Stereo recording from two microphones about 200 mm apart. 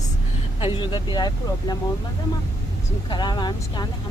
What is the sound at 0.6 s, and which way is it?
Speech, 25° left (ahead or behind).